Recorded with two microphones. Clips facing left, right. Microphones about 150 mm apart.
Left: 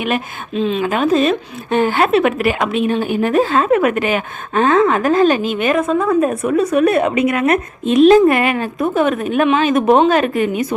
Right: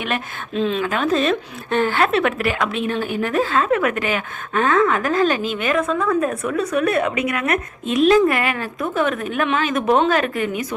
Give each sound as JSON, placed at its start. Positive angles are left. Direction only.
{"t": 0.0, "sound": "speech", "side_deg": 5}
{"t": 0.8, "sound": "a woman's voice", "side_deg": 15}